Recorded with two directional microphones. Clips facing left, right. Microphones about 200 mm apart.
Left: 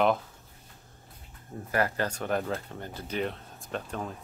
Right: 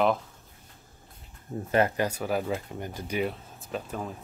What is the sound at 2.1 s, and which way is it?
Speech, 5° right (ahead or behind).